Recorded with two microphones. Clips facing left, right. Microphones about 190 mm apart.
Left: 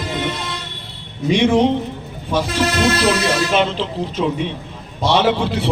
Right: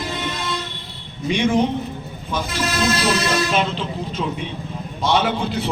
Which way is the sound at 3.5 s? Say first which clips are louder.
Left 4 dB; 80° left.